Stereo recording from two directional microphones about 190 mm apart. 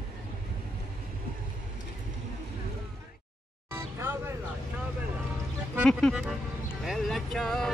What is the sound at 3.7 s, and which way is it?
Vehicle, 10° right (ahead or behind).